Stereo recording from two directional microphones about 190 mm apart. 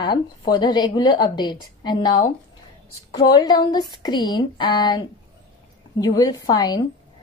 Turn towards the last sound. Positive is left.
turn(degrees=20)  # may be behind; listen again after turning